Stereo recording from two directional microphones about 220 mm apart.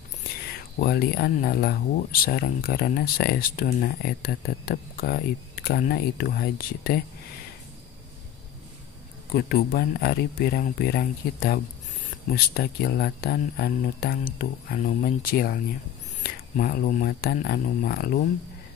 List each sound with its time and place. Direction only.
0.7 s speech: 45° left (ahead or behind)
9.3 s speech: 45° left (ahead or behind)